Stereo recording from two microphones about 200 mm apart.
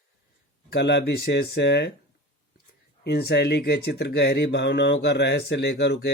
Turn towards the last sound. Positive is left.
turn(degrees=55)  # may be behind; listen again after turning